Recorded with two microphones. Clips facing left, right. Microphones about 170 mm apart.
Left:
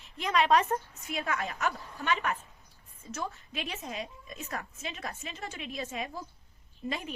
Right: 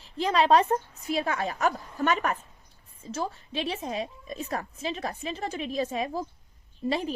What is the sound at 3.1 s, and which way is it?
A woman's voice, 30° right (ahead or behind).